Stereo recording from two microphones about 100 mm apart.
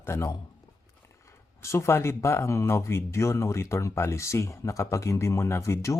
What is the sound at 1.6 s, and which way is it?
Speech, 25° left (ahead or behind).